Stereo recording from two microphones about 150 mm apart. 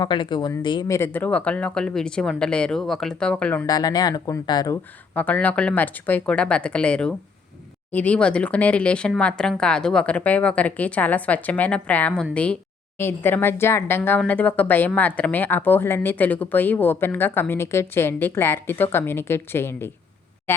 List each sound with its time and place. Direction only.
0.0 s speech: 30° left (ahead or behind)
0.9 s speech: 15° left (ahead or behind)
3.7 s speech: 25° left (ahead or behind)
5.1 s speech: 10° left (ahead or behind)